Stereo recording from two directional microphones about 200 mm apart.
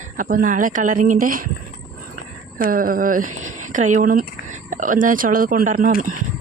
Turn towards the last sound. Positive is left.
turn(degrees=-40)  # may be behind; listen again after turning